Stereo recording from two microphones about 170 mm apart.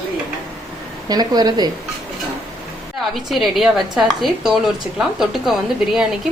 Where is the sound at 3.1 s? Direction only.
Centre (ahead or behind).